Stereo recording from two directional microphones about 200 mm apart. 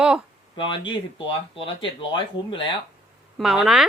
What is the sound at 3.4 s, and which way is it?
Speech, centre (ahead or behind).